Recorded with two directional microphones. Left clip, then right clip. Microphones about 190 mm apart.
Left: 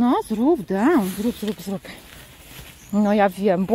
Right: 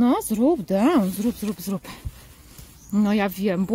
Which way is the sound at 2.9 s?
20° right (ahead or behind).